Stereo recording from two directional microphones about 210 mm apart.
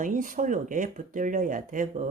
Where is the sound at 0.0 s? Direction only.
40° right (ahead or behind).